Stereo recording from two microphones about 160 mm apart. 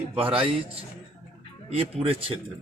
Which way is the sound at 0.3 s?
35° right (ahead or behind).